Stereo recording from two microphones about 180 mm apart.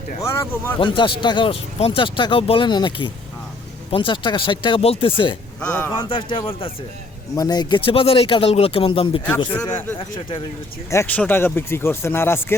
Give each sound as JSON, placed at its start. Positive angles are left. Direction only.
{"t": 0.2, "sound": "speech", "side_deg": 15}
{"t": 0.8, "sound": "speech", "side_deg": 25}
{"t": 5.5, "sound": "speech", "side_deg": 10}
{"t": 6.0, "sound": "speech", "side_deg": 30}
{"t": 9.6, "sound": "speech", "side_deg": 15}
{"t": 10.9, "sound": "speech", "side_deg": 10}